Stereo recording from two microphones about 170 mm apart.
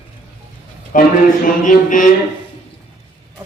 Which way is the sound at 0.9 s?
50° left (ahead or behind).